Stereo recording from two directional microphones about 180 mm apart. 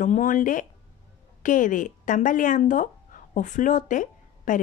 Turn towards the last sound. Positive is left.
turn(degrees=45)  # may be behind; listen again after turning